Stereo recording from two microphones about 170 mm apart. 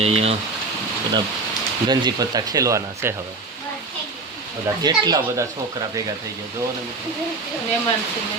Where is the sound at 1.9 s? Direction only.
25° right (ahead or behind).